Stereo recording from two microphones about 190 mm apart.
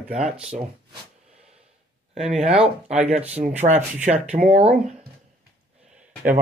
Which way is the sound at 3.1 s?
35° right (ahead or behind).